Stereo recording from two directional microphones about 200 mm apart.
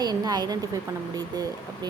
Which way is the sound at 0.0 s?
20° right (ahead or behind).